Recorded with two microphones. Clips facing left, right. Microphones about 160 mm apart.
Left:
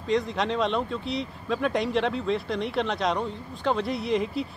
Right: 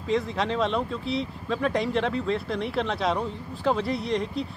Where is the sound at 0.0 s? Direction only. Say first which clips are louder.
Even; centre (ahead or behind).